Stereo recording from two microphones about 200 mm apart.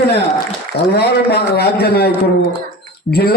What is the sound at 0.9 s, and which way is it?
A man's voice, 55° left (ahead or behind).